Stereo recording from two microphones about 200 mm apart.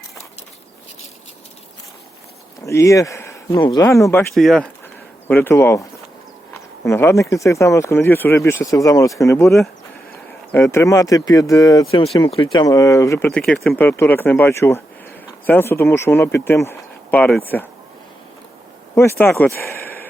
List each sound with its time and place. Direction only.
2.6 s speech: 15° left (ahead or behind)
4.4 s speech: centre (ahead or behind)
6.8 s speech: 15° left (ahead or behind)
10.5 s speech: 15° left (ahead or behind)
18.9 s speech: 10° left (ahead or behind)